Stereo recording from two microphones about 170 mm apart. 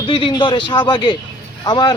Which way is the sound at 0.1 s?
30° left (ahead or behind).